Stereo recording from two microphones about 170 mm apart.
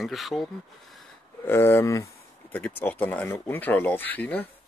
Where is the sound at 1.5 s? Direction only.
15° left (ahead or behind).